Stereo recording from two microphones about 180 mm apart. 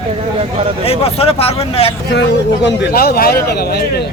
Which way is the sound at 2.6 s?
60° left (ahead or behind).